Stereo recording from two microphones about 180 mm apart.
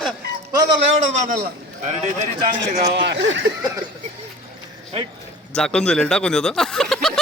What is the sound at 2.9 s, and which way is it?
Speech, 70° right (ahead or behind).